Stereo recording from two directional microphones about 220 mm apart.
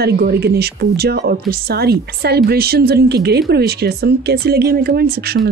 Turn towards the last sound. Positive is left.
turn(degrees=-45)  # may be behind; listen again after turning